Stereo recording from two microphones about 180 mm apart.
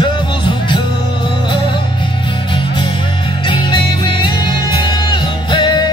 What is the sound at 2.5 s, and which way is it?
Music, 25° left (ahead or behind).